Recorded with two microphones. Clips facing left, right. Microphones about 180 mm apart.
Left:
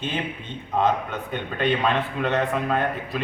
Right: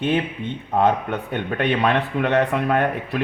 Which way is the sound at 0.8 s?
60° right (ahead or behind).